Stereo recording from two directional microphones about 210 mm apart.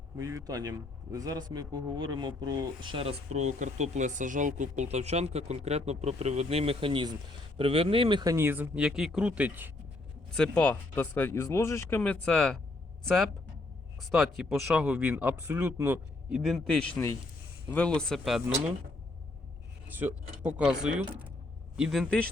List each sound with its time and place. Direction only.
0.2 s a man's voice: 15° right (ahead or behind)
10.3 s speech: 5° left (ahead or behind)
14.0 s speech: centre (ahead or behind)
19.9 s speech: 10° right (ahead or behind)